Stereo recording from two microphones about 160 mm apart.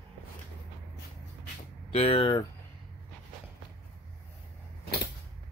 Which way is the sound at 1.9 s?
35° left (ahead or behind).